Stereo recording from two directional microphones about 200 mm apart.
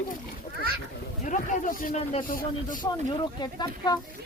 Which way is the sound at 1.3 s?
40° left (ahead or behind).